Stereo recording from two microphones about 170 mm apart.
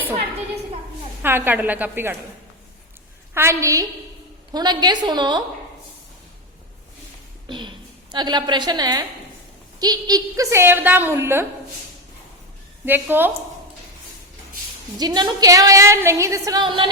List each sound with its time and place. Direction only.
1.2 s a woman's voice: 10° right (ahead or behind)
3.3 s a woman's voice: 15° right (ahead or behind)
7.4 s a sound: 25° right (ahead or behind)
8.1 s a woman's voice: 25° right (ahead or behind)
12.8 s a woman's voice: 10° right (ahead or behind)
14.9 s a woman's voice: 25° right (ahead or behind)